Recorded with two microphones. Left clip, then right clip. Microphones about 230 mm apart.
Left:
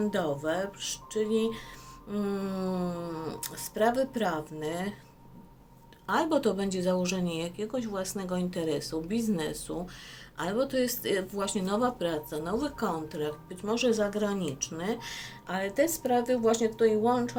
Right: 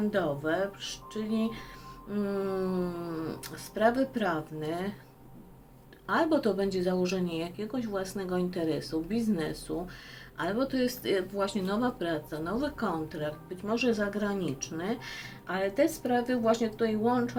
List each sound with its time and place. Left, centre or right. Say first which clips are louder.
0.1 s speech: even; left
6.1 s speech: even; left